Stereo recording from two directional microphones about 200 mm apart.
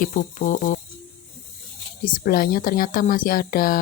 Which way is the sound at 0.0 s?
40° left (ahead or behind).